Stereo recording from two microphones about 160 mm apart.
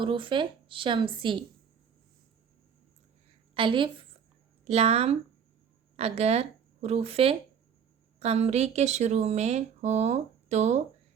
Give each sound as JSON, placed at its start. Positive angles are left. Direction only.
{"t": 0.0, "sound": "speech", "side_deg": -30}
{"t": 3.5, "sound": "a woman's voice", "side_deg": -30}